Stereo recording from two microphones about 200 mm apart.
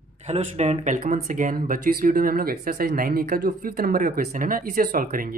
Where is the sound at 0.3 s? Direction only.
35° right (ahead or behind).